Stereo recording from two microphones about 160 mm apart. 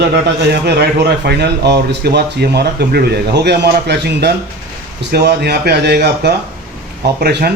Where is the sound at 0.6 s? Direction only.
90° right.